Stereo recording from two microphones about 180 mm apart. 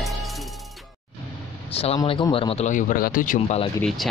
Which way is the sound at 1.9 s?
25° left (ahead or behind).